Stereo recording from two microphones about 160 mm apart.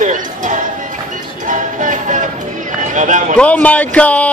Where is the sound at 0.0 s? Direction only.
55° right (ahead or behind).